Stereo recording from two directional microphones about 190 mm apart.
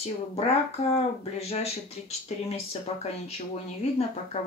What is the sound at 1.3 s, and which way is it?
Speech, 35° left (ahead or behind).